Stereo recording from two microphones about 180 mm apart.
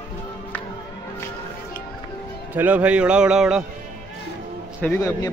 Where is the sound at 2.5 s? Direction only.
10° right (ahead or behind).